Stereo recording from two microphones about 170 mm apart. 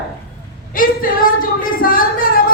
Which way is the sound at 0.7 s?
55° left (ahead or behind).